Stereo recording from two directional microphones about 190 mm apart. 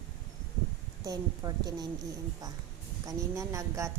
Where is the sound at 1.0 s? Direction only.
20° right (ahead or behind).